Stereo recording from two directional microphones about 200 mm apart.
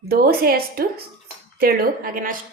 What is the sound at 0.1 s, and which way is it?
A woman's voice, 50° right (ahead or behind).